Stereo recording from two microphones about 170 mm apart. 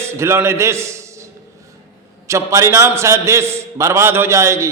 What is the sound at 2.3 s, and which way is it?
A man's voice, 15° right (ahead or behind).